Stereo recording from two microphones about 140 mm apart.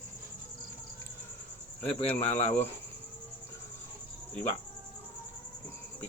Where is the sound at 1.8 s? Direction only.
15° left (ahead or behind).